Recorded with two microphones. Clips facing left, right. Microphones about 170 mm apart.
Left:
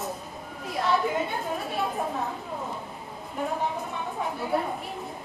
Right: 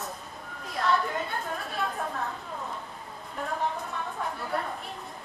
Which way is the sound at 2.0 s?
15° left (ahead or behind).